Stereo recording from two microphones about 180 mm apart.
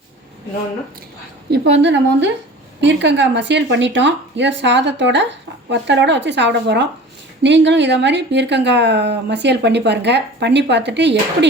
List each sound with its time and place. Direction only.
1.5 s speech: 70° right (ahead or behind)